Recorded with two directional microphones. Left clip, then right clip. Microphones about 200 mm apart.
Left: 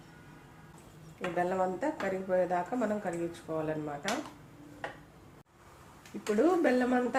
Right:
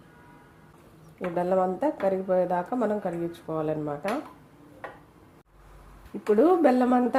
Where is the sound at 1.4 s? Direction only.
50° right (ahead or behind).